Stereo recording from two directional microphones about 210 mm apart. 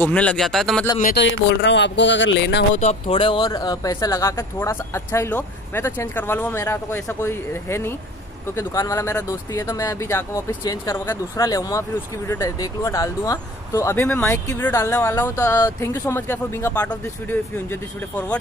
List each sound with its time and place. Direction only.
0.1 s speech: 5° left (ahead or behind)
1.1 s speech: 55° left (ahead or behind)
2.7 s speech: 35° left (ahead or behind); by 18.4 s 10° left (ahead or behind)